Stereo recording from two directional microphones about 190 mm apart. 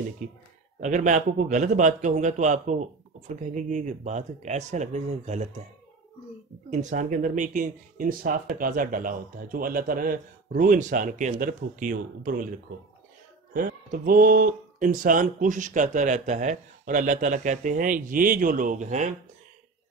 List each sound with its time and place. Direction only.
0.2 s a man's voice: 40° right (ahead or behind)
6.7 s speech: 40° right (ahead or behind)
13.5 s speech: 45° right (ahead or behind)